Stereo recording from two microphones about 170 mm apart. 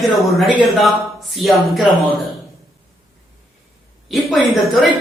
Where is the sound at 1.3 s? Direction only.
Centre (ahead or behind).